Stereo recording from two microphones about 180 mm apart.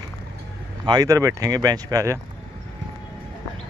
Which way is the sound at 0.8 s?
20° right (ahead or behind).